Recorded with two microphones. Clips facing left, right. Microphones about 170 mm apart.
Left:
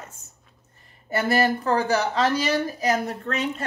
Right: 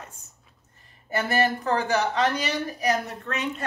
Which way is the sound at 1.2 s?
35° left (ahead or behind).